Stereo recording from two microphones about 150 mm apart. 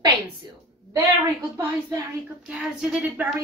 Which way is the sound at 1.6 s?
20° right (ahead or behind).